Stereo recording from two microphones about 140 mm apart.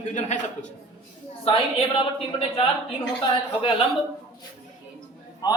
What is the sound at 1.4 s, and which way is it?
Speech, 40° left (ahead or behind).